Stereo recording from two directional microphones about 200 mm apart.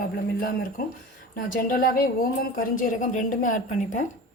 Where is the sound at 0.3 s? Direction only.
45° left (ahead or behind).